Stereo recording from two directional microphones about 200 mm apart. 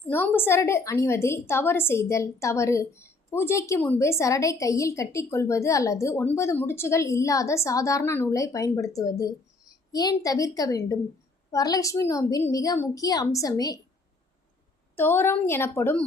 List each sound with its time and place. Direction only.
0.1 s a woman's voice: 10° left (ahead or behind)
14.9 s a woman's voice: 10° left (ahead or behind)